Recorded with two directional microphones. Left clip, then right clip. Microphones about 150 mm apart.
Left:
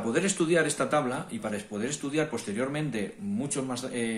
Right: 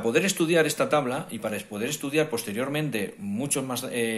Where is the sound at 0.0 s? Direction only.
30° right (ahead or behind).